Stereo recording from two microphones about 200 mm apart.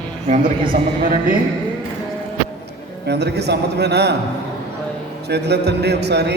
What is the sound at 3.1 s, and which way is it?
A man's voice, 55° right (ahead or behind).